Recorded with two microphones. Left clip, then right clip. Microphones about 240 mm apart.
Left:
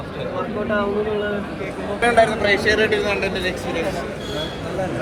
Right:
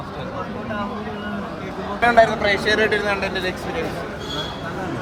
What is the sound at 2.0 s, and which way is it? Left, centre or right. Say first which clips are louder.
Speech: right 1 dB; right.